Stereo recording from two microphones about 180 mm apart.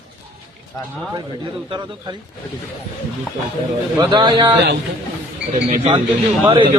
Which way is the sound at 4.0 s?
25° right (ahead or behind).